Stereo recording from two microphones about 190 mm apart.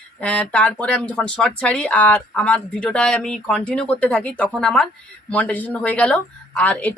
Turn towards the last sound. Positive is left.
turn(degrees=5)  # may be behind; listen again after turning